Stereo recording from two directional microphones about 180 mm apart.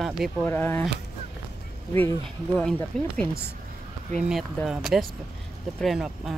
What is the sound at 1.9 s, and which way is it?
Speech, 10° left (ahead or behind).